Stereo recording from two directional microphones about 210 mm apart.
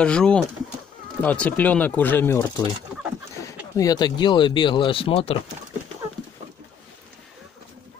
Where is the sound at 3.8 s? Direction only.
20° left (ahead or behind).